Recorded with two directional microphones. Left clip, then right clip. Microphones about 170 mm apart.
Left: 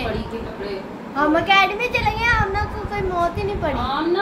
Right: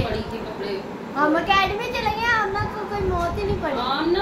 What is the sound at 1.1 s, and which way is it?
Children playing, 65° left (ahead or behind).